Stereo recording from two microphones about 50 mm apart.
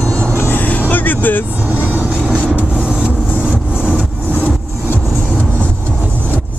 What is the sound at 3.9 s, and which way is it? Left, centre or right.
Vehicle, right.